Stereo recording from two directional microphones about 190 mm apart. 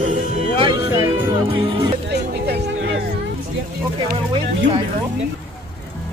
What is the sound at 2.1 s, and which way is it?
Music, 60° right (ahead or behind).